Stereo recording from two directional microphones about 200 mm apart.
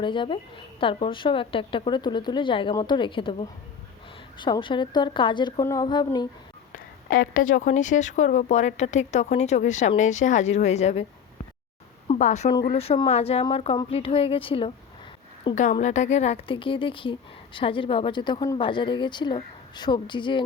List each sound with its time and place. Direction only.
0.0 s a woman's voice: 25° left (ahead or behind)
7.1 s a woman's voice: 45° left (ahead or behind)
12.0 s a woman's voice: 35° left (ahead or behind)
15.8 s a woman's voice: 35° left (ahead or behind)